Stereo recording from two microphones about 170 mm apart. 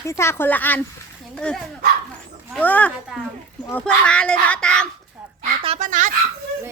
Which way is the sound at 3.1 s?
5° right (ahead or behind).